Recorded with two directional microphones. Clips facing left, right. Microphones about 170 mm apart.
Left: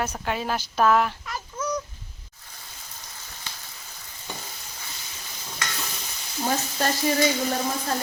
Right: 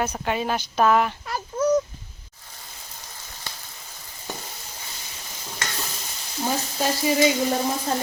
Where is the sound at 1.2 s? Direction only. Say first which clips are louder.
Right 8 dB; 30° right (ahead or behind).